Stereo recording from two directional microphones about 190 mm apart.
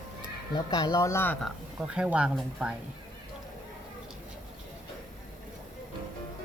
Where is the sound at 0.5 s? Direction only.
20° left (ahead or behind).